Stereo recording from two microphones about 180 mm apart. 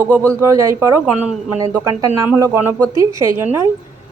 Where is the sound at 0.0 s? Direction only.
15° right (ahead or behind).